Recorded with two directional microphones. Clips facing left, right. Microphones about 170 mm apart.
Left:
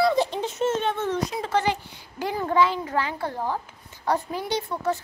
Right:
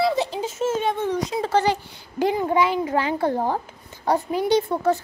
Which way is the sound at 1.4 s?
35° right (ahead or behind).